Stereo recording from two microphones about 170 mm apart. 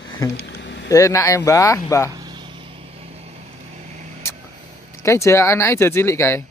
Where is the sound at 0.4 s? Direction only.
80° left.